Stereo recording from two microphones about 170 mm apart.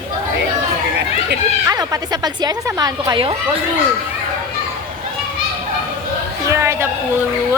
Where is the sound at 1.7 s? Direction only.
20° right (ahead or behind).